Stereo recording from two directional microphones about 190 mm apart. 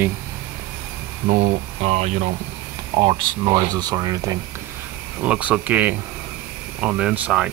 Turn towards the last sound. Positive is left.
turn(degrees=-5)  # may be behind; listen again after turning